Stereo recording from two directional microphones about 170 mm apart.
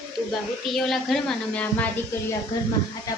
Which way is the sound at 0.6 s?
Centre (ahead or behind).